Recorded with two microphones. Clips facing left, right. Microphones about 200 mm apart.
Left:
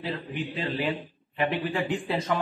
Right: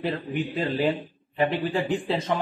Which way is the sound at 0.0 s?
45° right (ahead or behind).